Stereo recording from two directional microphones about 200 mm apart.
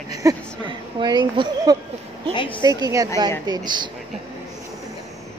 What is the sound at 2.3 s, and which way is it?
Speech, 25° left (ahead or behind).